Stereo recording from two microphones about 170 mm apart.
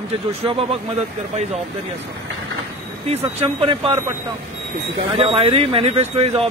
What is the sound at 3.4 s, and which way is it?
Speech, 30° right (ahead or behind).